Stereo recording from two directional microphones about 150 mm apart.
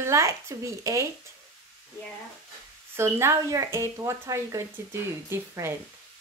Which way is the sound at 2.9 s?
15° right (ahead or behind).